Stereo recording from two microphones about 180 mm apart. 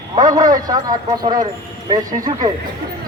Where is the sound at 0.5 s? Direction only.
20° right (ahead or behind).